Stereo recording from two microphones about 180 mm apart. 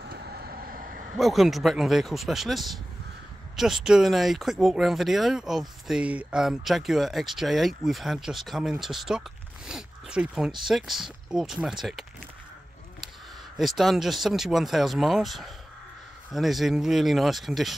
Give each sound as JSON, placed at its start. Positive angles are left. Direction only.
{"t": 0.1, "sound": "vehicle", "side_deg": -60}
{"t": 1.1, "sound": "speech", "side_deg": 0}
{"t": 13.6, "sound": "speech", "side_deg": 0}